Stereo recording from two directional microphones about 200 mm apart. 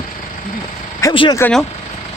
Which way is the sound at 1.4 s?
5° left (ahead or behind).